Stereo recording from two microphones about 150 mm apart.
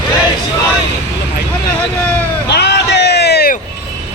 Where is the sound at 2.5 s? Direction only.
90° left.